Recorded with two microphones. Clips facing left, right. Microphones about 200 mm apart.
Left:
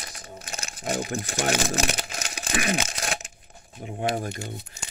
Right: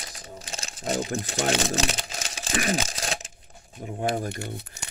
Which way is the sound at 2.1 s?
35° right (ahead or behind).